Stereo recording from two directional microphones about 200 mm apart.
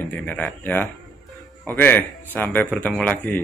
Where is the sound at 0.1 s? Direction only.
10° left (ahead or behind).